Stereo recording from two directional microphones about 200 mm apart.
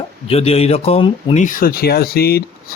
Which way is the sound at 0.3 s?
30° left (ahead or behind).